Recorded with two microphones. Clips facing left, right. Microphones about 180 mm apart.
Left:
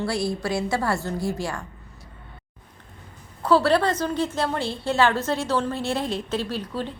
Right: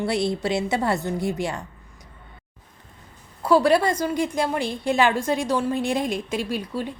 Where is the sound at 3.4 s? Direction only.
15° right (ahead or behind).